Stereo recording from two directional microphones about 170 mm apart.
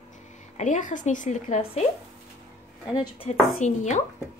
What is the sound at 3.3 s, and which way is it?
Speech, 40° left (ahead or behind).